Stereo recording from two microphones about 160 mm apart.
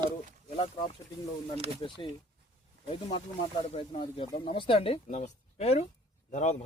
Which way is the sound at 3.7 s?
40° left (ahead or behind).